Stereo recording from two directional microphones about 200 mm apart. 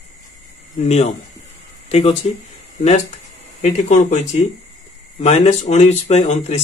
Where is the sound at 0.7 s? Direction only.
30° left (ahead or behind).